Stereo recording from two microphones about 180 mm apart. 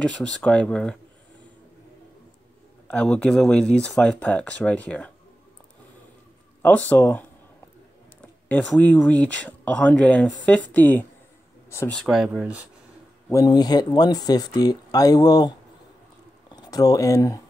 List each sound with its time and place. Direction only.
0.4 s speech: 5° left (ahead or behind)
2.9 s speech: 5° left (ahead or behind)
6.6 s speech: 10° left (ahead or behind)
8.5 s speech: 10° left (ahead or behind)
12.0 s speech: centre (ahead or behind)
13.3 s speech: 20° left (ahead or behind)